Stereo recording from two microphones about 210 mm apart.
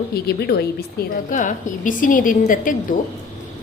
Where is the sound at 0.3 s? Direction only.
50° left (ahead or behind).